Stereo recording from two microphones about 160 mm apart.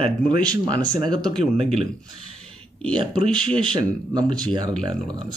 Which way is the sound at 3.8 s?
25° right (ahead or behind).